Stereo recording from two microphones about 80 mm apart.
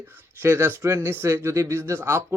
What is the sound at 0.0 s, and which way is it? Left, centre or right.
Speech, right.